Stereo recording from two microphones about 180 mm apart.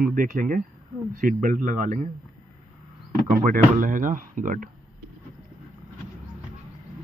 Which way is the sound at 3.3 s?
50° right (ahead or behind).